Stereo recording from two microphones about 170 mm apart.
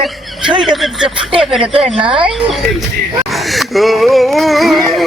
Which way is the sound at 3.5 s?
Centre (ahead or behind).